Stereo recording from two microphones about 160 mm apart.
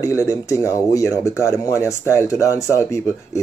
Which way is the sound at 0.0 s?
20° left (ahead or behind).